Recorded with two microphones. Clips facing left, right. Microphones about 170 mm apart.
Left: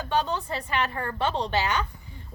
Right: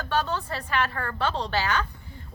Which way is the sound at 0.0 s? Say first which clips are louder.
Left 1 dB; 15° left (ahead or behind).